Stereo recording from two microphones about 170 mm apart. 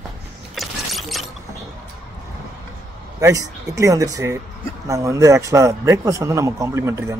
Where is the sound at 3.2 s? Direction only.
20° right (ahead or behind).